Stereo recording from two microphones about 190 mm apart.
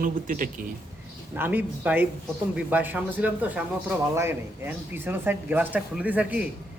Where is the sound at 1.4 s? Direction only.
10° right (ahead or behind).